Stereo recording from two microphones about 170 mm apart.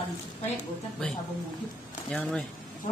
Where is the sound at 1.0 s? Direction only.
5° left (ahead or behind).